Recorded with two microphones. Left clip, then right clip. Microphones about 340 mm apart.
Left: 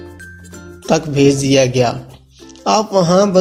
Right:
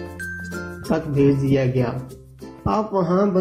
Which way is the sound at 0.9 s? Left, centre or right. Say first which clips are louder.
Left 7 dB; left.